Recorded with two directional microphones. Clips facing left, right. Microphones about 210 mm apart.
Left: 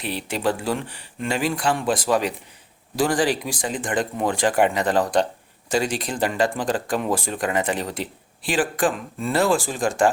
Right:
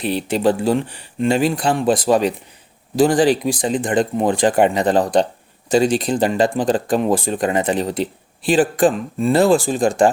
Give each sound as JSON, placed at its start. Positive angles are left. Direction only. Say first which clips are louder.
{"t": 0.0, "sound": "speech", "louder": "right 7 dB", "side_deg": -25}
{"t": 3.5, "sound": "speech", "louder": "right 7 dB", "side_deg": -35}
{"t": 3.8, "sound": "speech", "louder": "right 5 dB", "side_deg": -20}